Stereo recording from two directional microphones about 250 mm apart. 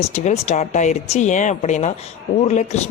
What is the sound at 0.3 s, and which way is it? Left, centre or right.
Speech, left.